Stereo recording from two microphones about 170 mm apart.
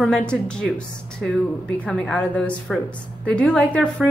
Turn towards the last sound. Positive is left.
turn(degrees=5)  # may be behind; listen again after turning